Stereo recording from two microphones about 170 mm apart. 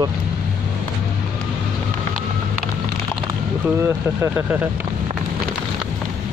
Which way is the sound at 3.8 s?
15° right (ahead or behind).